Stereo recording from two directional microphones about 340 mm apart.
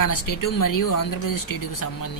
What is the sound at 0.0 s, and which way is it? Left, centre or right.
Speech, left.